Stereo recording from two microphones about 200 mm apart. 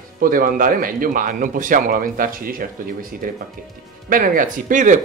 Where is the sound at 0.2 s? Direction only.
45° right (ahead or behind).